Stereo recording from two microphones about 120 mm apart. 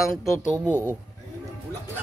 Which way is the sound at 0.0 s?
5° right (ahead or behind).